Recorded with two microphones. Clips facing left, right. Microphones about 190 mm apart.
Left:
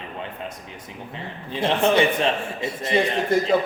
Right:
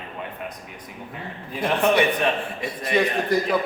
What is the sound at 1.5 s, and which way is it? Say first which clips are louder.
A man's voice: left 1 dB; 25° left (ahead or behind).